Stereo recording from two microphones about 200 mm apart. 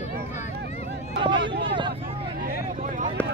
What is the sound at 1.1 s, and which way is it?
Speech, 60° right (ahead or behind).